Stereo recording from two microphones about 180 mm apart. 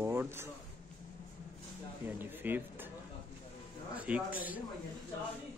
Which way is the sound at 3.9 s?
10° right (ahead or behind).